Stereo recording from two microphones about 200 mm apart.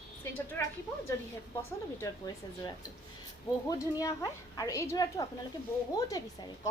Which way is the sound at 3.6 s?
15° left (ahead or behind).